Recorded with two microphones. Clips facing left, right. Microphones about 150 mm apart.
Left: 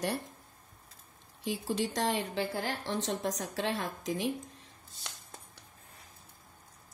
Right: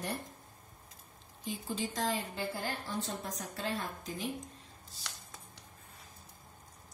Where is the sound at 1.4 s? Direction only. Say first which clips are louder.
Left 5 dB; 75° left (ahead or behind).